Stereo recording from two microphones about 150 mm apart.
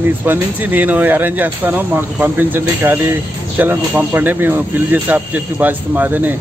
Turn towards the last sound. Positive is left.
turn(degrees=-10)  # may be behind; listen again after turning